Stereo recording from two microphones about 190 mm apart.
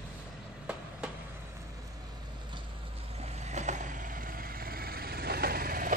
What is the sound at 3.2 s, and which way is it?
Vehicle, 35° right (ahead or behind).